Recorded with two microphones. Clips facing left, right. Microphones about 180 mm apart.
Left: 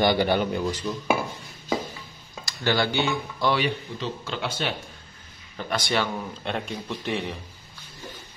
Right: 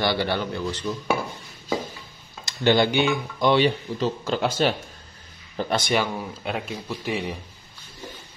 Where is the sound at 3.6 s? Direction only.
40° right (ahead or behind).